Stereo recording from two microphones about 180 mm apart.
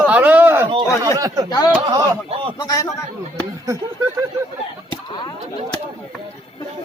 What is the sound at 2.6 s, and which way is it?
Speech, 20° left (ahead or behind).